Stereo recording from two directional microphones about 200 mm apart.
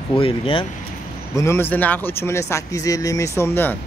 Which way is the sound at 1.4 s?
10° left (ahead or behind).